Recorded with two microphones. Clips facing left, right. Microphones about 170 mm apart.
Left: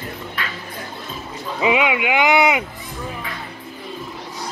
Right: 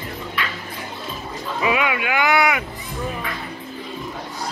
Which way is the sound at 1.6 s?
20° left (ahead or behind).